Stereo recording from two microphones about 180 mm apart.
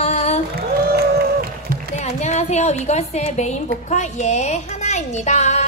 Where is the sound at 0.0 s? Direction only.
35° left (ahead or behind).